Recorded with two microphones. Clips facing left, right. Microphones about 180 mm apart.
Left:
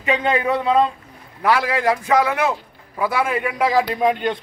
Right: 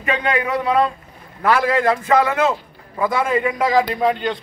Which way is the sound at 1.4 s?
10° left (ahead or behind).